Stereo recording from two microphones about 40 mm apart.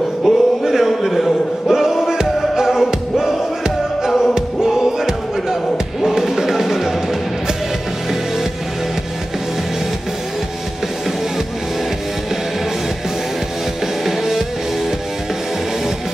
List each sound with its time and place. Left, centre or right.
0.2 s a sound: centre
4.3 s music: centre
14.0 s music: centre